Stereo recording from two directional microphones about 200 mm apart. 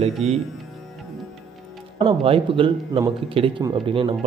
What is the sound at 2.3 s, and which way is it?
A man's voice, 25° right (ahead or behind).